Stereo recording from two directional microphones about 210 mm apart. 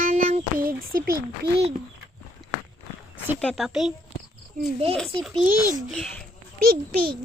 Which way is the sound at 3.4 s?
5° left (ahead or behind).